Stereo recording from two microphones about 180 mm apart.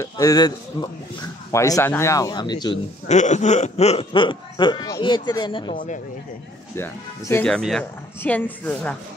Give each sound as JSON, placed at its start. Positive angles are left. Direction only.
{"t": 0.0, "sound": "speech", "side_deg": 20}
{"t": 3.1, "sound": "speech", "side_deg": 40}
{"t": 6.7, "sound": "speech", "side_deg": 15}